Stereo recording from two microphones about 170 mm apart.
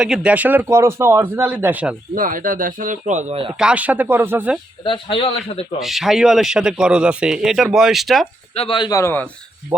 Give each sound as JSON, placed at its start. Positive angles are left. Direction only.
{"t": 0.0, "sound": "speech", "side_deg": -5}
{"t": 2.1, "sound": "speech", "side_deg": -55}
{"t": 3.6, "sound": "speech", "side_deg": -5}
{"t": 4.8, "sound": "speech", "side_deg": 30}
{"t": 5.8, "sound": "speech", "side_deg": 0}
{"t": 8.5, "sound": "speech", "side_deg": 30}